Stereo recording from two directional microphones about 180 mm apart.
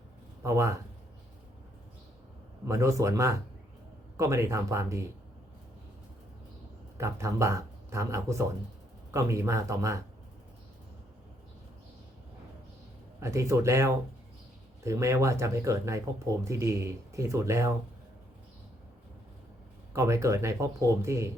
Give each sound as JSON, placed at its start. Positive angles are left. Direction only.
{"t": 0.4, "sound": "speech", "side_deg": -15}
{"t": 2.6, "sound": "speech", "side_deg": -15}
{"t": 7.0, "sound": "speech", "side_deg": -15}
{"t": 13.1, "sound": "speech", "side_deg": -15}
{"t": 19.9, "sound": "speech", "side_deg": -15}